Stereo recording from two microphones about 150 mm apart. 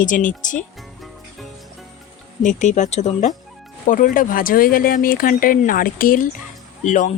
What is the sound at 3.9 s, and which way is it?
Speech, 65° left (ahead or behind).